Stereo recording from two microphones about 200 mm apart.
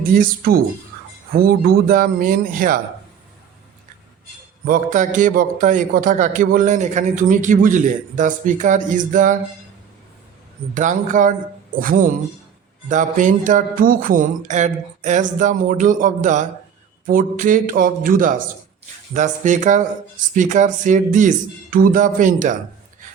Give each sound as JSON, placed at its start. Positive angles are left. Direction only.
{"t": 0.1, "sound": "a man's voice", "side_deg": -45}
{"t": 4.6, "sound": "a man's voice", "side_deg": -40}
{"t": 10.8, "sound": "a man's voice", "side_deg": -40}